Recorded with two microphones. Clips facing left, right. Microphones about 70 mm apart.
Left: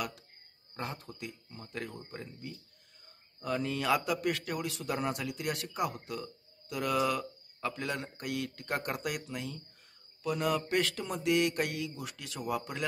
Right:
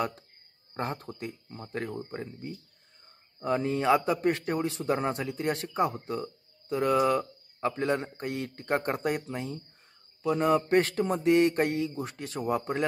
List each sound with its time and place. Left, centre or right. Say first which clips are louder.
0.7 s a man's voice: right 6 dB; right